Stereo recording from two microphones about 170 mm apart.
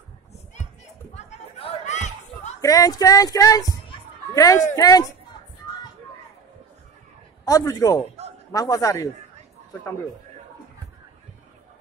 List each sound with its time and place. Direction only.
1.1 s a sound: 40° left (ahead or behind)
2.6 s speech: 20° left (ahead or behind)
7.4 s speech: 20° left (ahead or behind)